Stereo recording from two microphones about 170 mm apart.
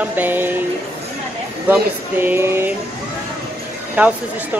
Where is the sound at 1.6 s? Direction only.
10° right (ahead or behind).